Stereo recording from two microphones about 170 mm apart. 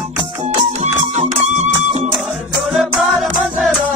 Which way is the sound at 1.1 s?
40° right (ahead or behind).